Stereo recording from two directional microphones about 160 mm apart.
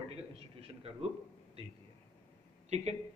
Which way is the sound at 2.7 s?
45° right (ahead or behind).